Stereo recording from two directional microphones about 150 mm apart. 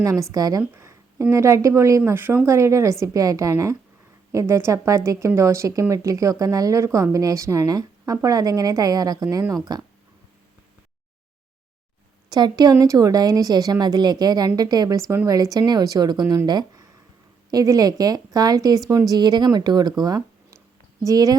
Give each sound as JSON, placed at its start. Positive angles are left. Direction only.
{"t": 0.0, "sound": "speech", "side_deg": -20}
{"t": 12.3, "sound": "speech", "side_deg": -25}
{"t": 16.2, "sound": "speech", "side_deg": -15}
{"t": 16.5, "sound": "speech", "side_deg": -30}